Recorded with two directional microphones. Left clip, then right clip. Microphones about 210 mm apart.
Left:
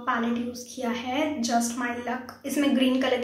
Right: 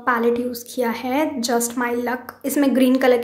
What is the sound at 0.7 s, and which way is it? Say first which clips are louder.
A woman's voice: right 7 dB; 50° right (ahead or behind).